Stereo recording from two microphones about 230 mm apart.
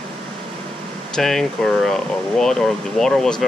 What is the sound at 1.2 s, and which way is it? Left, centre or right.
Speech, centre.